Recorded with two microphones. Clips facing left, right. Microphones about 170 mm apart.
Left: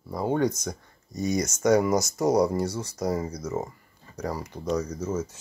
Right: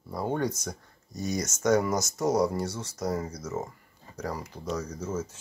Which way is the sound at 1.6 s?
15° left (ahead or behind).